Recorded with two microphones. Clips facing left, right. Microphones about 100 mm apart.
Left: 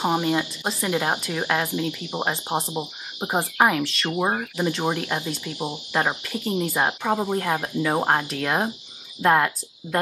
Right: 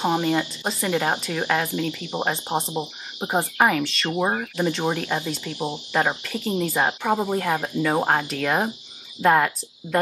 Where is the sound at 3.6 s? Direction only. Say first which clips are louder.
Left 1 dB; centre (ahead or behind).